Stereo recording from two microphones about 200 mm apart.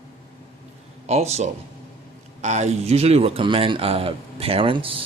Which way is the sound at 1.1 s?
35° right (ahead or behind).